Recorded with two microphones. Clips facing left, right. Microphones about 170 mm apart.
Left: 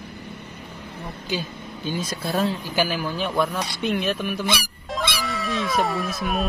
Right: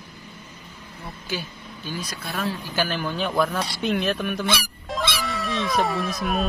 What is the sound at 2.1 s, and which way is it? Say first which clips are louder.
Speech: left 5 dB; 30° left (ahead or behind).